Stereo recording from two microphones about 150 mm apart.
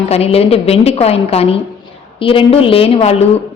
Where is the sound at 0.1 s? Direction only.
45° left (ahead or behind).